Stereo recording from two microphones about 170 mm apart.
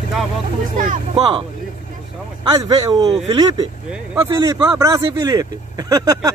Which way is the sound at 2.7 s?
20° right (ahead or behind).